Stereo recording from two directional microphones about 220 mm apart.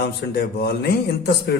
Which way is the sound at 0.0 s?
50° left (ahead or behind).